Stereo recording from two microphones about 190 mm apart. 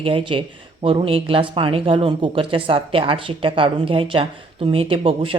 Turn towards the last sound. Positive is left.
turn(degrees=-30)  # may be behind; listen again after turning